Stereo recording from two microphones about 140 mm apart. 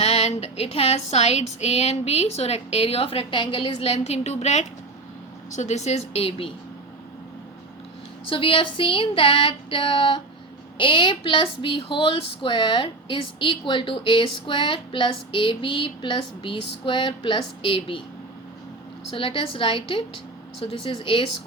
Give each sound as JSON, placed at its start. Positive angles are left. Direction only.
{"t": 0.0, "sound": "a sound", "side_deg": 50}
{"t": 8.3, "sound": "speech", "side_deg": 40}
{"t": 19.1, "sound": "speech", "side_deg": 40}